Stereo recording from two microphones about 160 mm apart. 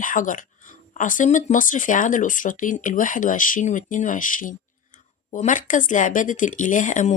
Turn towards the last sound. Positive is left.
turn(degrees=55)  # may be behind; listen again after turning